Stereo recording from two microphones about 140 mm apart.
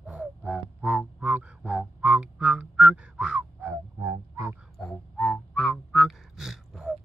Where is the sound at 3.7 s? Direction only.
20° right (ahead or behind).